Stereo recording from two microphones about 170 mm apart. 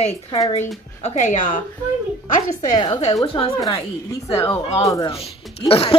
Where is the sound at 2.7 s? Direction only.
30° left (ahead or behind).